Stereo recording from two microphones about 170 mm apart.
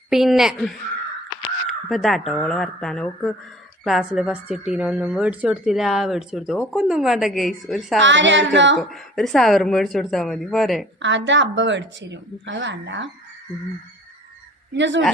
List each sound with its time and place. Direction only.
0.1 s a woman's voice: centre (ahead or behind)
8.0 s speech: 90° right
8.8 s a woman's voice: centre (ahead or behind)
11.0 s speech: 90° right
14.7 s speech: 90° right